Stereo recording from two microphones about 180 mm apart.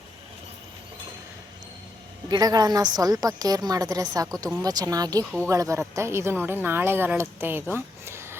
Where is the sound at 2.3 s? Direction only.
20° right (ahead or behind).